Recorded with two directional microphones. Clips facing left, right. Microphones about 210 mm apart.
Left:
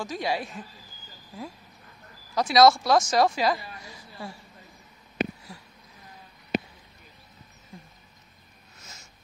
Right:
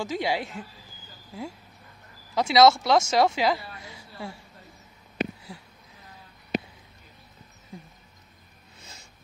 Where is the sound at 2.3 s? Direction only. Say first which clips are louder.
Even; 25° right (ahead or behind).